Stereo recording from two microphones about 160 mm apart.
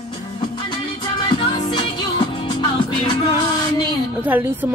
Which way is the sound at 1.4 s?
30° left (ahead or behind).